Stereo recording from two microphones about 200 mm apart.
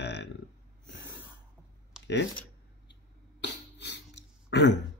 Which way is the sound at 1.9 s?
Centre (ahead or behind).